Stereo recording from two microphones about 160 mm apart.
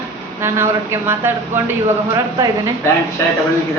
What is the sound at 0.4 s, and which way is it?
A woman's voice, 15° right (ahead or behind).